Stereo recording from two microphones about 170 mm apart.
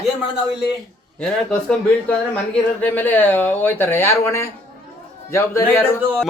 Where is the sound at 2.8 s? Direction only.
10° left (ahead or behind).